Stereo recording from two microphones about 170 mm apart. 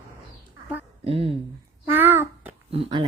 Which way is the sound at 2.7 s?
30° right (ahead or behind).